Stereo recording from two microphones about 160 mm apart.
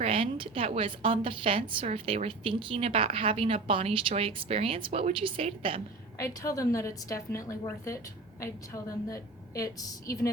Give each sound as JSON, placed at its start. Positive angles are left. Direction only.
{"t": 0.0, "sound": "a woman's voice", "side_deg": -35}
{"t": 6.1, "sound": "a woman's voice", "side_deg": 20}